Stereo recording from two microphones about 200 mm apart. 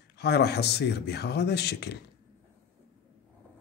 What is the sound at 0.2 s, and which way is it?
Speech, 55° left (ahead or behind).